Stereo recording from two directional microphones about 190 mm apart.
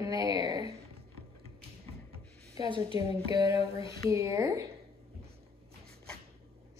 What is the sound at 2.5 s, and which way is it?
A woman's voice, 25° right (ahead or behind).